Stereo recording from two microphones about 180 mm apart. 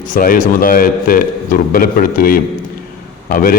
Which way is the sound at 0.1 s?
50° left (ahead or behind).